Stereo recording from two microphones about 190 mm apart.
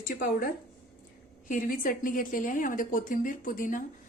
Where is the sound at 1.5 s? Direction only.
45° left (ahead or behind).